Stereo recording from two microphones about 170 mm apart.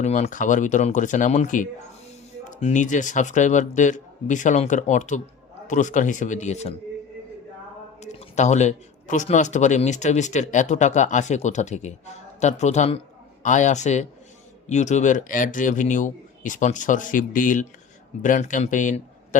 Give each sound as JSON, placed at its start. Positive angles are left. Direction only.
{"t": 0.0, "sound": "speech", "side_deg": 45}
{"t": 8.0, "sound": "speech", "side_deg": 40}